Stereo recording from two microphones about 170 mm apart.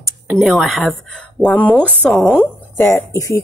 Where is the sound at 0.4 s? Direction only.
Centre (ahead or behind).